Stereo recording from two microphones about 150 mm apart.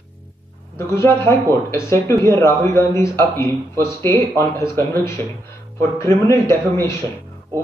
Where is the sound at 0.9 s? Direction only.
15° left (ahead or behind).